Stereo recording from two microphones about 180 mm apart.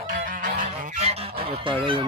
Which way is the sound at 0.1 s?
50° right (ahead or behind).